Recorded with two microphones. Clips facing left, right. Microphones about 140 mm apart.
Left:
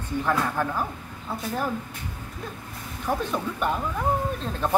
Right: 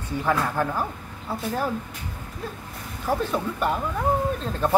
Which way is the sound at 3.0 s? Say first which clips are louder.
Right 2 dB; 5° right (ahead or behind).